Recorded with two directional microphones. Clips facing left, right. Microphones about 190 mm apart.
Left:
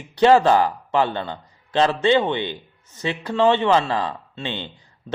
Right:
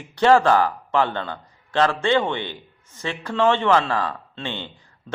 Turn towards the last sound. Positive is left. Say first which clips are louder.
# left 1 dB
turn(degrees=15)  # may be behind; listen again after turning